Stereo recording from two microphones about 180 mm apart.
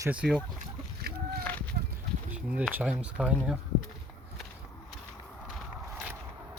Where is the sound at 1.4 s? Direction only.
10° left (ahead or behind).